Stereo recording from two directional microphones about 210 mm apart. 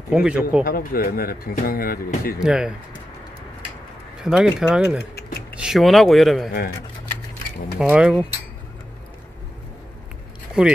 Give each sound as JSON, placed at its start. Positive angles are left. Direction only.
{"t": 0.1, "sound": "speech", "side_deg": -5}
{"t": 0.7, "sound": "speech", "side_deg": 45}
{"t": 2.4, "sound": "speech", "side_deg": -5}
{"t": 4.2, "sound": "speech", "side_deg": 0}
{"t": 7.9, "sound": "speech", "side_deg": -5}
{"t": 10.6, "sound": "speech", "side_deg": -5}